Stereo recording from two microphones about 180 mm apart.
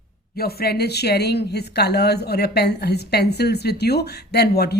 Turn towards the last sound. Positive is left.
turn(degrees=65)  # may be behind; listen again after turning